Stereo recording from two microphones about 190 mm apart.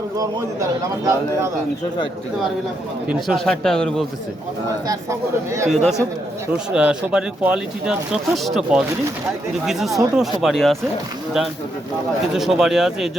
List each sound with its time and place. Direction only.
0.2 s a man's voice: 15° right (ahead or behind)
3.1 s speech: centre (ahead or behind)
5.6 s speech: 35° right (ahead or behind)
6.7 s speech: 5° right (ahead or behind)
12.3 s speech: centre (ahead or behind)